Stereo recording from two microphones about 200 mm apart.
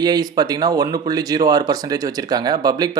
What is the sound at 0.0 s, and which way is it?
Speech, 20° right (ahead or behind).